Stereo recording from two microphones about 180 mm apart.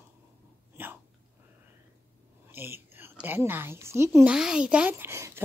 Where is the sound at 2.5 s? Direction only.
10° right (ahead or behind).